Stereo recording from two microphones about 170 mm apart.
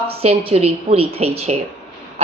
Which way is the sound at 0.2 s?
35° right (ahead or behind).